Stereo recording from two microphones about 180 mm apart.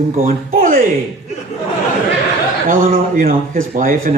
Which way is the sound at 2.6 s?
50° right (ahead or behind).